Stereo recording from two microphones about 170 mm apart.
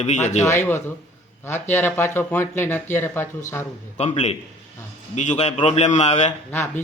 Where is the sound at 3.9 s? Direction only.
40° left (ahead or behind).